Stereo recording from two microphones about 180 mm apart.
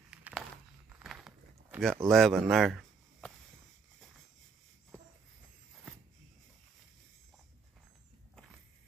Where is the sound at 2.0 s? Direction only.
Centre (ahead or behind).